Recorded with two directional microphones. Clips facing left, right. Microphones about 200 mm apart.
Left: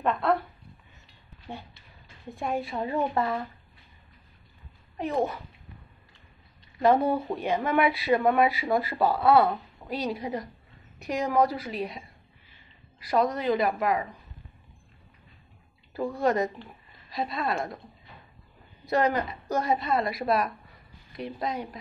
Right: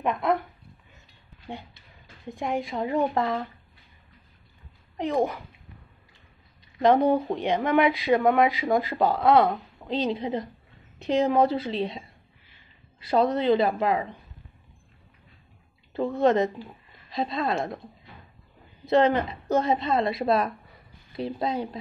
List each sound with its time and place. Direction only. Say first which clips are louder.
0.0 s dog: even; 15° right (ahead or behind)
1.5 s speech: right 2 dB; 15° right (ahead or behind)
4.9 s a child's voice: right 2 dB; 15° right (ahead or behind)
6.8 s a woman's voice: right 3 dB; 15° right (ahead or behind)
13.0 s a woman's voice: right 3 dB; 25° right (ahead or behind)
15.9 s a woman's voice: right 4 dB; 20° right (ahead or behind)
18.9 s a woman's voice: right 4 dB; 25° right (ahead or behind)